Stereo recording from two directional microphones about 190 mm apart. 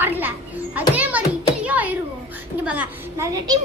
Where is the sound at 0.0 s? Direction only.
10° right (ahead or behind).